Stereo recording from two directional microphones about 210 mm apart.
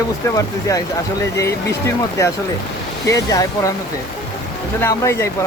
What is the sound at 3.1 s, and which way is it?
Speech, 15° left (ahead or behind).